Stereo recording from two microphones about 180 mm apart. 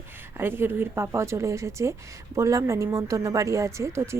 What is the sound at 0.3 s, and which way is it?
Speech, 10° right (ahead or behind).